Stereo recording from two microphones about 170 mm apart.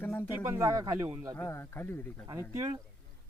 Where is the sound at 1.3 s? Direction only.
15° left (ahead or behind).